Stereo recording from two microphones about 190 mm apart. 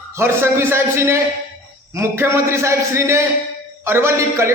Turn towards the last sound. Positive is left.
turn(degrees=-15)  # may be behind; listen again after turning